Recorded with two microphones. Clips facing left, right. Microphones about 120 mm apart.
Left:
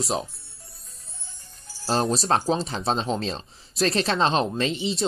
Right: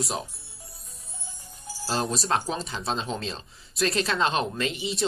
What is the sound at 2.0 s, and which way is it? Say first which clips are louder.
Speech: left 4 dB; 30° left (ahead or behind).